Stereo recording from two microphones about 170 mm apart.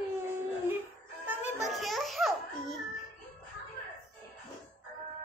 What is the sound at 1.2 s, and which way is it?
Music, 10° right (ahead or behind).